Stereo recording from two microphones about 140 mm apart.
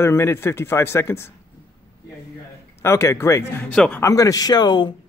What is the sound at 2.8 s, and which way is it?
Speech, 20° left (ahead or behind).